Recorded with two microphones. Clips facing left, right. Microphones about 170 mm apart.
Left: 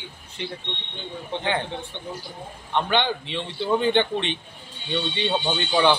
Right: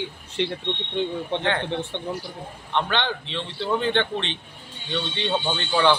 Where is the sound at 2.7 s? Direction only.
10° left (ahead or behind).